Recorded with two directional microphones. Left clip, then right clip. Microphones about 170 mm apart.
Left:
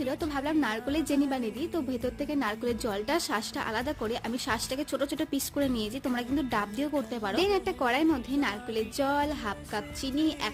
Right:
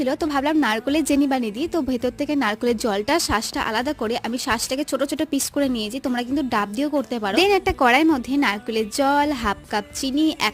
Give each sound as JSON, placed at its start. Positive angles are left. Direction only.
{"t": 0.0, "sound": "a woman's voice", "side_deg": -40}